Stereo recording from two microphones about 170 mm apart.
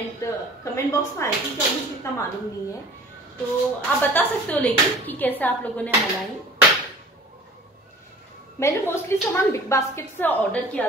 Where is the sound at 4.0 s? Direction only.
10° left (ahead or behind).